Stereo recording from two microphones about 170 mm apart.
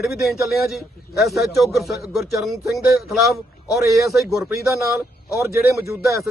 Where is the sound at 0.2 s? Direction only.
Centre (ahead or behind).